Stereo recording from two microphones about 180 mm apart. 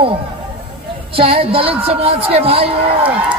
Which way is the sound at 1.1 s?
30° right (ahead or behind).